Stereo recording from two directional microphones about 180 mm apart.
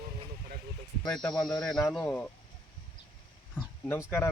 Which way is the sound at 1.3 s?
20° left (ahead or behind).